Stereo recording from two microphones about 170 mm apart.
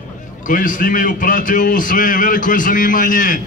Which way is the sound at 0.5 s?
50° left (ahead or behind).